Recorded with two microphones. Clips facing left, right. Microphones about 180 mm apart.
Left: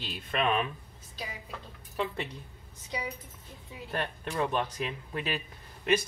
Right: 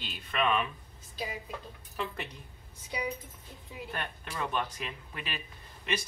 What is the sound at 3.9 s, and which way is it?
Speech, 35° left (ahead or behind).